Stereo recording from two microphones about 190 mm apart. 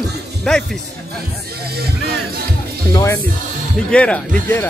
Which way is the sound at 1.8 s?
55° right (ahead or behind).